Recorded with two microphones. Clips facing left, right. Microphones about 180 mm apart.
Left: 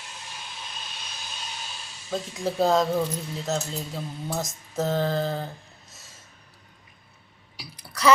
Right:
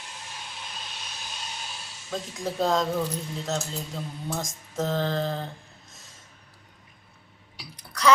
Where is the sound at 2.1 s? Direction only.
5° left (ahead or behind).